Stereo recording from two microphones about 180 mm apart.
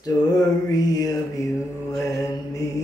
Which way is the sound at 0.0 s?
20° left (ahead or behind).